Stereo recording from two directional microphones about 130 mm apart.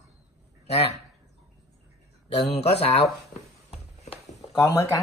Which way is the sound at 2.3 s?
55° left (ahead or behind).